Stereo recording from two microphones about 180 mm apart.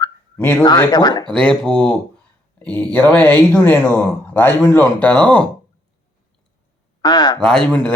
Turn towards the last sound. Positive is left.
turn(degrees=10)  # may be behind; listen again after turning